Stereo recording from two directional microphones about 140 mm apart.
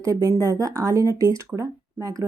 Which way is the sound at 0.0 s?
20° right (ahead or behind).